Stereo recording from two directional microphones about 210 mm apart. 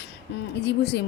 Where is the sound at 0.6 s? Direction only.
55° left (ahead or behind).